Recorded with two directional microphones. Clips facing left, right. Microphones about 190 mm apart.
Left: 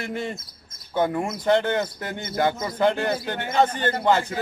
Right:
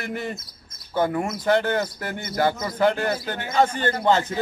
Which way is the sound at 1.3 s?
20° left (ahead or behind).